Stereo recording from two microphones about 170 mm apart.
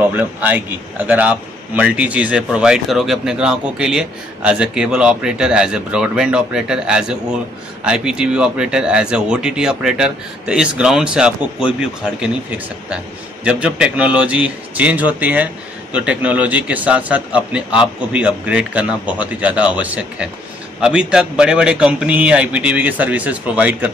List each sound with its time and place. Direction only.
0.0 s a man's voice: 10° right (ahead or behind)